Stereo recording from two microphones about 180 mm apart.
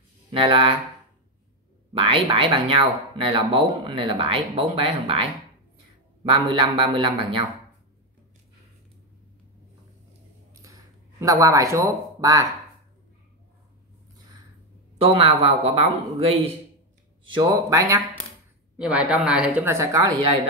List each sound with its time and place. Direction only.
0.3 s speech: 30° right (ahead or behind)
2.0 s speech: 30° right (ahead or behind)
10.5 s a sound: 20° right (ahead or behind)
15.0 s a man's voice: 30° right (ahead or behind)
18.8 s a woman's voice: 5° right (ahead or behind)